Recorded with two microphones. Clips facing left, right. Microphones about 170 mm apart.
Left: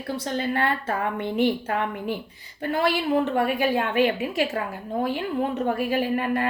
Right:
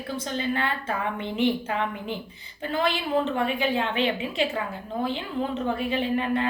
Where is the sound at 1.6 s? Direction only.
50° left (ahead or behind).